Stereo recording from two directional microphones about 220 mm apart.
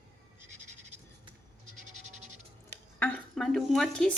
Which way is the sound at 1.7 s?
35° right (ahead or behind).